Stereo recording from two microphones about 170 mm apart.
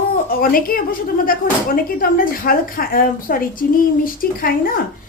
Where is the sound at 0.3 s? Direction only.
55° left (ahead or behind).